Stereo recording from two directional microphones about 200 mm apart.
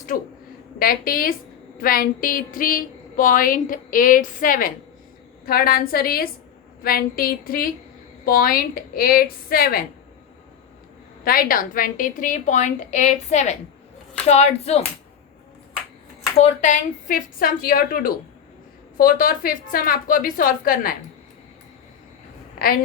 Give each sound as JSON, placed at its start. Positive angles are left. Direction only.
{"t": 0.8, "sound": "a woman's voice", "side_deg": 45}
{"t": 11.2, "sound": "a woman's voice", "side_deg": 45}
{"t": 16.4, "sound": "a woman's voice", "side_deg": 35}
{"t": 22.5, "sound": "a woman's voice", "side_deg": 45}